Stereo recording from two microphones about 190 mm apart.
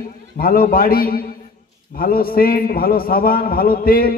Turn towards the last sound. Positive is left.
turn(degrees=50)  # may be behind; listen again after turning